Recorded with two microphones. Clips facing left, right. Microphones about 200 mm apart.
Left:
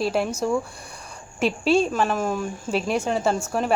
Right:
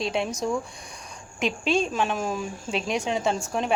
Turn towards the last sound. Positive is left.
turn(degrees=5)  # may be behind; listen again after turning